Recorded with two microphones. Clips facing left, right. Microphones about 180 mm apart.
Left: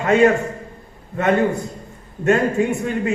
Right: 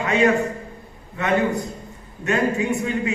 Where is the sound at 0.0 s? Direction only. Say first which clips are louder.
Left 4 dB; 50° left (ahead or behind).